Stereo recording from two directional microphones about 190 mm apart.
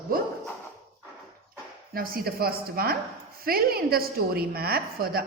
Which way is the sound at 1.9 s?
50° right (ahead or behind).